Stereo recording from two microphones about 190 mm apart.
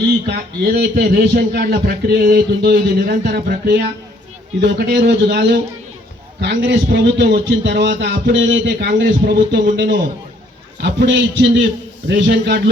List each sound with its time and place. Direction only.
0.3 s a man's voice: 60° right (ahead or behind)
6.4 s a man's voice: 65° right (ahead or behind)
10.8 s a man's voice: 70° right (ahead or behind)